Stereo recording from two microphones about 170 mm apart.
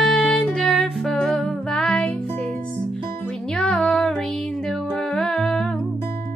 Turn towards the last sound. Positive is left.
turn(degrees=5)  # may be behind; listen again after turning